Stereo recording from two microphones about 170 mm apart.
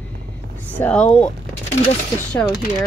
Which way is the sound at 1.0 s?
40° left (ahead or behind).